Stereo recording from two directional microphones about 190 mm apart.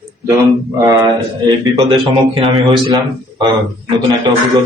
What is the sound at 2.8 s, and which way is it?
Speech, 20° right (ahead or behind).